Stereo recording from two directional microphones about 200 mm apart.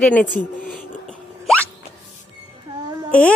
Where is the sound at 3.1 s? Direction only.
5° left (ahead or behind).